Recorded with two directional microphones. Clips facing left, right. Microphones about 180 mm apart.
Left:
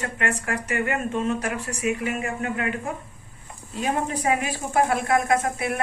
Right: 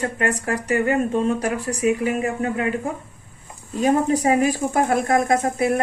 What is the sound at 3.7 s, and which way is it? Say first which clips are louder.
Speech: right 8 dB; 40° right (ahead or behind).